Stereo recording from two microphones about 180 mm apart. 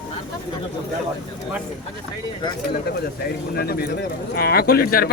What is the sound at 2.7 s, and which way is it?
Speech, 60° left (ahead or behind).